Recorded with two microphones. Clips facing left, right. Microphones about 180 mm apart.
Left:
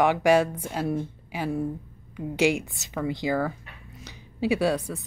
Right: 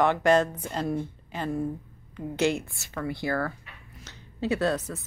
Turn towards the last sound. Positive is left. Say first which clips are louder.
# left 2 dB
turn(degrees=15)  # may be behind; listen again after turning